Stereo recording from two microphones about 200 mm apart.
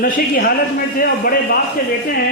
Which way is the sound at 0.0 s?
45° left (ahead or behind).